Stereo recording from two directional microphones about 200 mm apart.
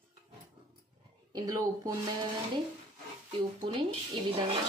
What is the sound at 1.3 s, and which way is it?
A woman's voice, 20° right (ahead or behind).